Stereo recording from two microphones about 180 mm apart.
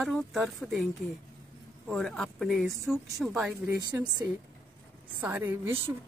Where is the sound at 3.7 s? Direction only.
20° right (ahead or behind).